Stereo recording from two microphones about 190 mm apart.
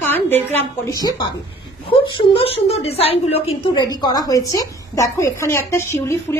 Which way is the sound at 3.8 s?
20° left (ahead or behind).